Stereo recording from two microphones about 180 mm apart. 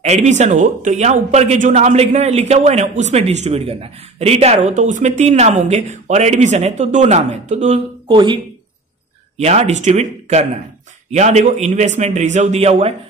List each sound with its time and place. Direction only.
0.0 s a man's voice: 40° right (ahead or behind)
9.4 s a man's voice: 35° right (ahead or behind)